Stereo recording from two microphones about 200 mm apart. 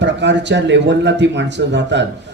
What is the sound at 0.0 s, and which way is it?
Speech, 60° right (ahead or behind).